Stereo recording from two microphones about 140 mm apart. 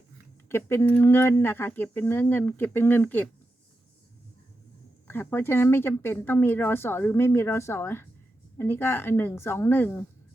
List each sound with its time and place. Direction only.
0.4 s speech: 15° left (ahead or behind)
5.0 s speech: 15° left (ahead or behind)